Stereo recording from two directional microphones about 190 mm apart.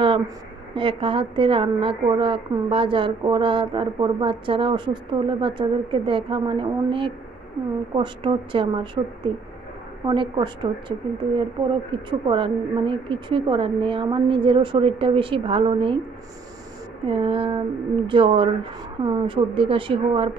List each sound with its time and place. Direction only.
0.7 s a woman's voice: 25° right (ahead or behind)
17.1 s a woman's voice: 25° right (ahead or behind)